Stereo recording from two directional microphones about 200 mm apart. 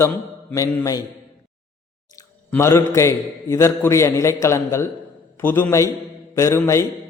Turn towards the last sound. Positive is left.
turn(degrees=15)  # may be behind; listen again after turning